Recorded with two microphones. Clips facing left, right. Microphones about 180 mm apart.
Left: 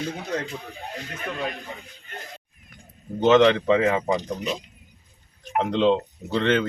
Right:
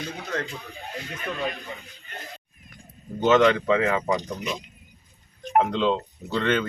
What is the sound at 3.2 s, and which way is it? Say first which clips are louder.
Speech: left 2 dB; 20° left (ahead or behind).